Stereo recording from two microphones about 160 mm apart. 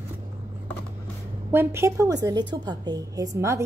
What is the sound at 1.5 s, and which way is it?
A woman's voice, 15° right (ahead or behind).